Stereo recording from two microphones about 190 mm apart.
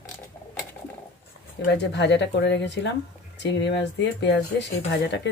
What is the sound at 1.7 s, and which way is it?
Speech, 65° left (ahead or behind).